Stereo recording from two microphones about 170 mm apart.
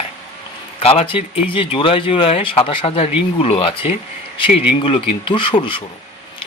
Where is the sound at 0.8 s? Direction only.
35° left (ahead or behind).